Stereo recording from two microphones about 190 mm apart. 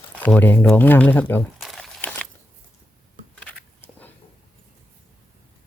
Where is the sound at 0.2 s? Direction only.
10° left (ahead or behind).